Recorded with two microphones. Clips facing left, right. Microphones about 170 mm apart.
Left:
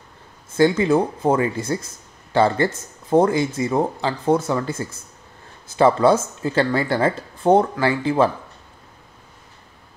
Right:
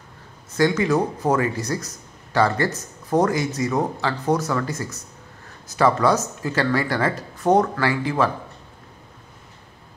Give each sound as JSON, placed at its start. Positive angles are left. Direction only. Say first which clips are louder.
{"t": 0.6, "sound": "speech", "louder": "left 3 dB", "side_deg": 30}